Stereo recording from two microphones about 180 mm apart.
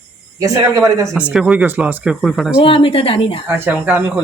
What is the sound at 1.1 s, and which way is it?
Speech, 5° right (ahead or behind).